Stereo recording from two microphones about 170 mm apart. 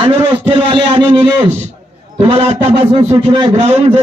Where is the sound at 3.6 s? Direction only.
40° right (ahead or behind).